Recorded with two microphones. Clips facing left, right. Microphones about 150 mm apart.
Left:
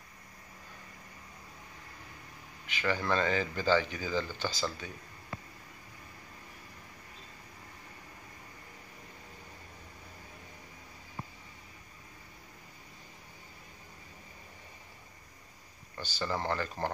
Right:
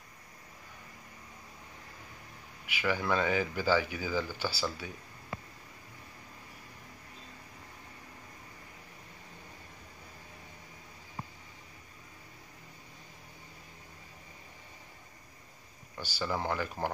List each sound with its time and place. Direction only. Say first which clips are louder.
2.6 s speech: even; 10° right (ahead or behind)
16.0 s speech: even; 10° right (ahead or behind)